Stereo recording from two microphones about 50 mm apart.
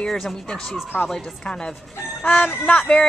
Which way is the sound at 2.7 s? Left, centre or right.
Left.